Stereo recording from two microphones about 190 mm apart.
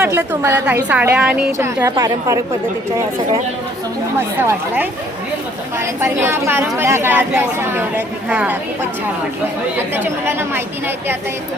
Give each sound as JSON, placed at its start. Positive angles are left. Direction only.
{"t": 0.0, "sound": "a woman's voice", "side_deg": -10}
{"t": 1.5, "sound": "a woman's voice", "side_deg": -15}
{"t": 4.4, "sound": "a woman's voice", "side_deg": -10}
{"t": 9.7, "sound": "a woman's voice", "side_deg": -10}